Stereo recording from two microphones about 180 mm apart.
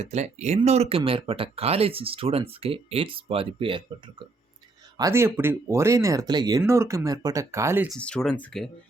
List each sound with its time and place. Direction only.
0.0 s speech: 40° right (ahead or behind)
4.9 s speech: 15° right (ahead or behind)
7.9 s speech: 5° left (ahead or behind)